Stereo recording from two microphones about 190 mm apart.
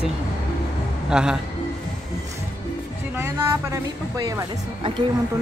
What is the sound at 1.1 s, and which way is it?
Speech, 5° right (ahead or behind).